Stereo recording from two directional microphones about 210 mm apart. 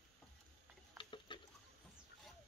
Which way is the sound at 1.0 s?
20° left (ahead or behind).